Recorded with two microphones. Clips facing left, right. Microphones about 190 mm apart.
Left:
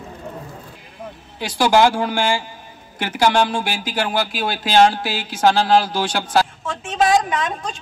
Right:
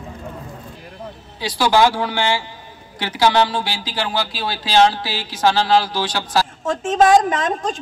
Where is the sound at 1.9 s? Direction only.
45° left (ahead or behind).